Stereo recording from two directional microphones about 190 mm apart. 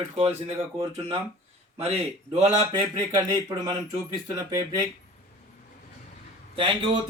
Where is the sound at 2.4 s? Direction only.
20° right (ahead or behind).